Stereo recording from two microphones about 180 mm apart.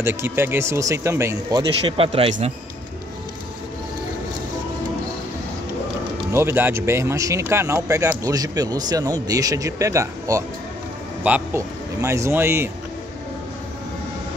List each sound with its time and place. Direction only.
0.0 s speech: 15° right (ahead or behind); by 2.3 s 30° right (ahead or behind)
6.3 s speech: 10° right (ahead or behind)